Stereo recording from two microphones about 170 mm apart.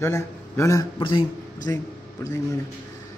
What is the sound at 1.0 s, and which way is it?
Speech, 30° left (ahead or behind).